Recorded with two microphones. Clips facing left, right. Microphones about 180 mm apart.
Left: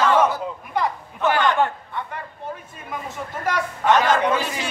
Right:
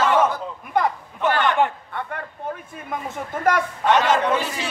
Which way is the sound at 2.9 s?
50° right (ahead or behind).